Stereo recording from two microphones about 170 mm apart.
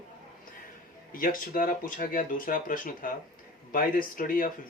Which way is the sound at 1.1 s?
55° left (ahead or behind).